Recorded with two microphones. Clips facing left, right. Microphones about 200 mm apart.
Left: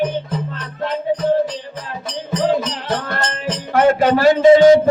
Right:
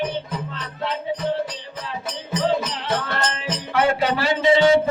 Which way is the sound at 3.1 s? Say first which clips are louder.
Left 3 dB; 45° left (ahead or behind).